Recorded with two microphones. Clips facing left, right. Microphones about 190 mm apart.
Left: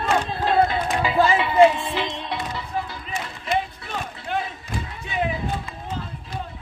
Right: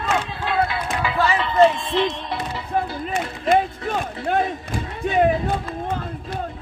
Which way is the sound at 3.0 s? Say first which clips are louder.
Right 7 dB; 50° right (ahead or behind).